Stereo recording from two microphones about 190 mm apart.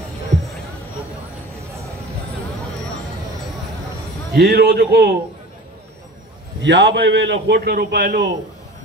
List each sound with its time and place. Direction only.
4.4 s a man's voice: 55° right (ahead or behind)
6.6 s a man's voice: 70° right (ahead or behind); by 8.3 s 45° right (ahead or behind)